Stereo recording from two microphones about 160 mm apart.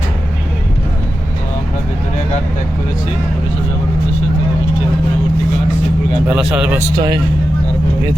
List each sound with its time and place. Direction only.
6.2 s speech: 5° right (ahead or behind)
6.7 s speech: 25° right (ahead or behind)